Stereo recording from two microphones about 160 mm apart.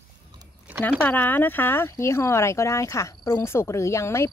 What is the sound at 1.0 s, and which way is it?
Speech, 10° left (ahead or behind).